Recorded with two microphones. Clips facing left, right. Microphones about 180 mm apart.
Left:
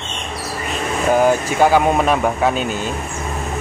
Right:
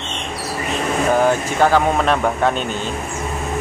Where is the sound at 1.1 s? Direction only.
10° left (ahead or behind).